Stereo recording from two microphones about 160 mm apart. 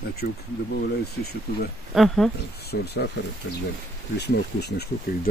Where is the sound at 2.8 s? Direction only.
90° left.